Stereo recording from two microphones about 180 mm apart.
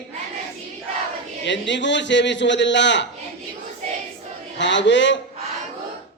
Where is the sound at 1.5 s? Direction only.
80° left.